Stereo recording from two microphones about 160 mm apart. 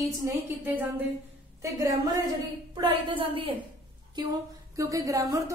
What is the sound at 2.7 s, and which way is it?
Speech, 35° right (ahead or behind).